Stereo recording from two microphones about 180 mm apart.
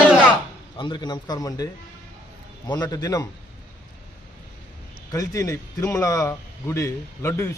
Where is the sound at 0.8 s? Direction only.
25° left (ahead or behind).